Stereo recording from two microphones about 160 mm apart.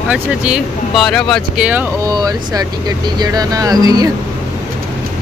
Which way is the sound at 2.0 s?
25° right (ahead or behind).